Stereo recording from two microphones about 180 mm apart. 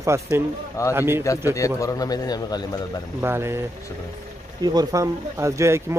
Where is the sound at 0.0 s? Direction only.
15° right (ahead or behind).